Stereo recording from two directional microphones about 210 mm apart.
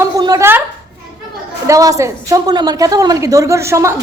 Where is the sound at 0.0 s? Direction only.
15° right (ahead or behind).